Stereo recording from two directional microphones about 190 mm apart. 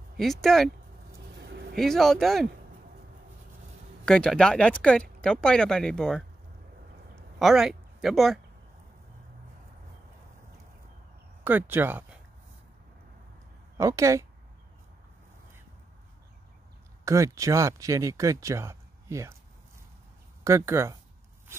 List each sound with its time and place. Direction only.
0.2 s speech: centre (ahead or behind)
1.4 s a sound: 60° right (ahead or behind)
1.8 s speech: centre (ahead or behind)
4.0 s speech: 5° left (ahead or behind)
7.3 s speech: centre (ahead or behind)
11.4 s speech: 10° right (ahead or behind)
13.7 s speech: 15° right (ahead or behind)
17.0 s speech: 15° right (ahead or behind)
20.4 s speech: 15° right (ahead or behind)